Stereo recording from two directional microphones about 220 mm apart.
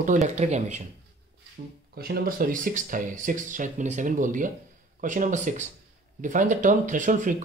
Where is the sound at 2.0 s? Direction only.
45° right (ahead or behind).